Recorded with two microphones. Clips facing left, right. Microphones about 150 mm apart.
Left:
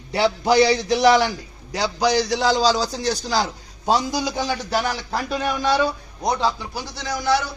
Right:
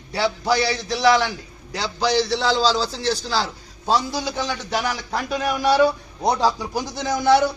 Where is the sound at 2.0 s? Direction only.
15° left (ahead or behind); by 5.8 s 10° right (ahead or behind).